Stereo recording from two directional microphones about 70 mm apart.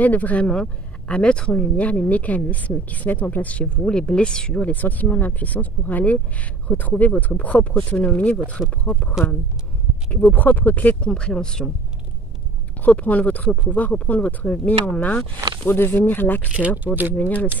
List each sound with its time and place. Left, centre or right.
0.0 s speech: left
10.3 s speech: left; by 11.6 s centre
12.8 s speech: left
16.5 s speech: right
17.2 s speech: left